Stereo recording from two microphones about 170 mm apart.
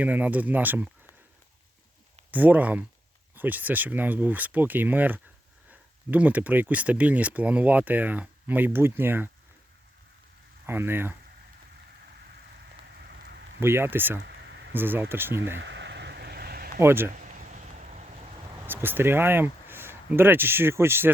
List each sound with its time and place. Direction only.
0.0 s speech: 10° right (ahead or behind)
2.3 s speech: 10° right (ahead or behind)
10.7 s speech: 15° right (ahead or behind)
13.0 s rain on surface: 70° right (ahead or behind)
13.6 s speech: 15° right (ahead or behind)
14.3 s a sound: 90° right
14.7 s speech: 10° right (ahead or behind)
15.6 s a sound: 90° right; by 16.8 s 60° right (ahead or behind)
16.8 s speech: 15° right (ahead or behind)
17.2 s a sound: 50° right (ahead or behind)
18.6 s speech: 10° right (ahead or behind)